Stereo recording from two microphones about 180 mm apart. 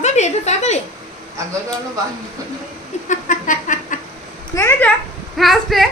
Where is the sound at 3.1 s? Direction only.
45° left (ahead or behind).